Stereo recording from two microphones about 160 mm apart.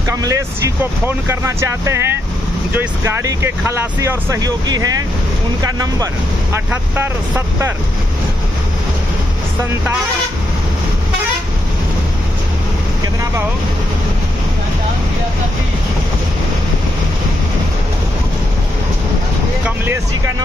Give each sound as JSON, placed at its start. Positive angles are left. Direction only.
{"t": 0.1, "sound": "speech", "side_deg": -20}